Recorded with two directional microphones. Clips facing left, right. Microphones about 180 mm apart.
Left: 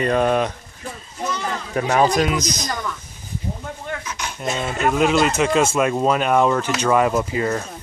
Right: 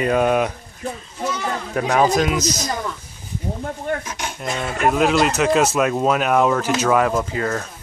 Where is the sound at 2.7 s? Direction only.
25° right (ahead or behind).